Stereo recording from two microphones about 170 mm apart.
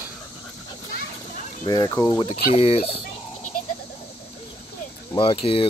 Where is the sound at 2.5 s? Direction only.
35° left (ahead or behind).